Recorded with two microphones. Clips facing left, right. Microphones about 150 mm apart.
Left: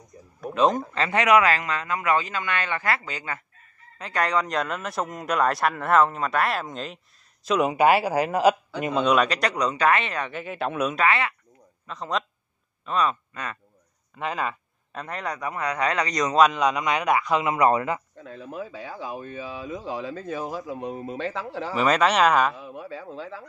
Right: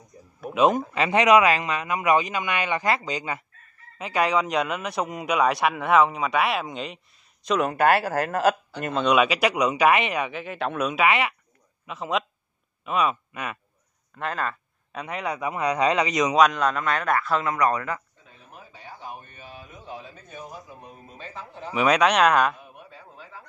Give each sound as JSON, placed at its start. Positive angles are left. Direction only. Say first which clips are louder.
{"t": 0.4, "sound": "a man's voice", "louder": "right 1 dB", "side_deg": -10}
{"t": 7.4, "sound": "a man's voice", "louder": "left 1 dB", "side_deg": 10}
{"t": 9.1, "sound": "a man's voice", "louder": "right 2 dB", "side_deg": -5}
{"t": 10.3, "sound": "speech", "louder": "even", "side_deg": 0}
{"t": 11.1, "sound": "a man's voice", "louder": "right 1 dB", "side_deg": -15}
{"t": 14.1, "sound": "a man's voice", "louder": "left 1 dB", "side_deg": 10}
{"t": 14.9, "sound": "a man's voice", "louder": "right 2 dB", "side_deg": -5}
{"t": 16.1, "sound": "a man's voice", "louder": "even", "side_deg": -5}
{"t": 18.2, "sound": "speech", "louder": "left 14 dB", "side_deg": 90}
{"t": 21.7, "sound": "speech", "louder": "right 1 dB", "side_deg": 0}
{"t": 22.6, "sound": "speech", "louder": "left 10 dB", "side_deg": 90}